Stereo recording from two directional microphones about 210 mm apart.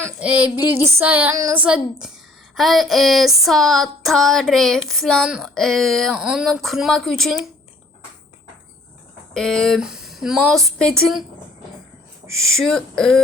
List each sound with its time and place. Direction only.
0.0 s a sound: 5° right (ahead or behind)
2.6 s speech: centre (ahead or behind)
9.3 s speech: 5° left (ahead or behind)
12.4 s speech: centre (ahead or behind)